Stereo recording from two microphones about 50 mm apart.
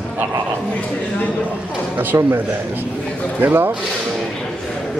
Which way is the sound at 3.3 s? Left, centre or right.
Right.